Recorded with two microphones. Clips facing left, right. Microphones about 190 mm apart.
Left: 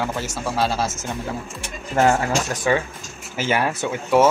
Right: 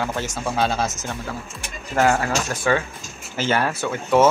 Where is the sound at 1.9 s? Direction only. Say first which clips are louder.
Left 1 dB; 20° left (ahead or behind).